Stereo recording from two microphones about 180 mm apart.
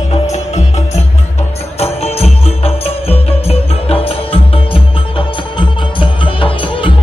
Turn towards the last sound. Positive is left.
turn(degrees=30)  # may be behind; listen again after turning